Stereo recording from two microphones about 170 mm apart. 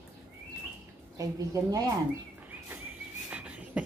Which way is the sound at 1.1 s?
20° right (ahead or behind).